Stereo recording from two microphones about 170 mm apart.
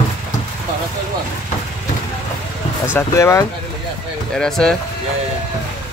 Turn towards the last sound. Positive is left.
turn(degrees=5)  # may be behind; listen again after turning